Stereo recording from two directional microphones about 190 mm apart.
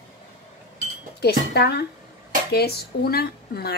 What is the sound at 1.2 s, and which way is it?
Speech, 60° left (ahead or behind).